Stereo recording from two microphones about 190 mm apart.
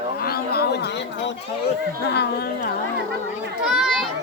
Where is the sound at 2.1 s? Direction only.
60° left (ahead or behind).